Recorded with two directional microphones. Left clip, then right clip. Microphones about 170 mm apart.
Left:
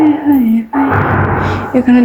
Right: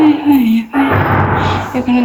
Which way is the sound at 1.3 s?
35° left (ahead or behind).